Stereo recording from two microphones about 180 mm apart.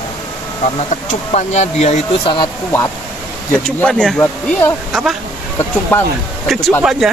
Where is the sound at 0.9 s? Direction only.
40° left (ahead or behind).